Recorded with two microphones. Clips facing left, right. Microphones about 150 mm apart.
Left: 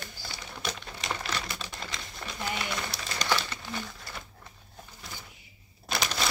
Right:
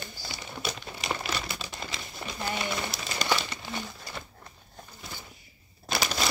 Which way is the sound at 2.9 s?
10° right (ahead or behind).